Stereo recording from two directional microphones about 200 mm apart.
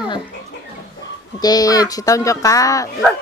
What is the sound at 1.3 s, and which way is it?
Speech, 20° left (ahead or behind).